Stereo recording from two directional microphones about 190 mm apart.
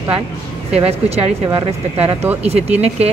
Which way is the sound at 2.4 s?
35° right (ahead or behind).